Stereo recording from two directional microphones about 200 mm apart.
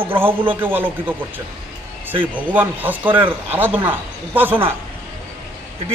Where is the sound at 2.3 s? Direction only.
10° right (ahead or behind).